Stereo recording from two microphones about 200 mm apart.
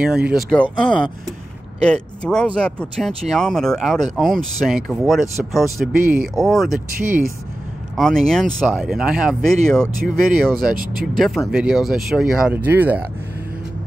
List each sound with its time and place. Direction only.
0.0 s speech: 5° right (ahead or behind)
5.9 s speech: 45° right (ahead or behind)
6.4 s speech: centre (ahead or behind)
7.0 s speech: 40° right (ahead or behind)
7.9 s speech: centre (ahead or behind)
9.9 s speech: 45° right (ahead or behind)
10.3 s speech: centre (ahead or behind)
10.7 s speech: 45° right (ahead or behind)
11.1 s speech: centre (ahead or behind)